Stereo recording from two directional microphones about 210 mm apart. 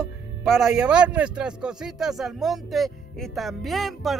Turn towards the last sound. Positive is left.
turn(degrees=0)  # may be behind; listen again after turning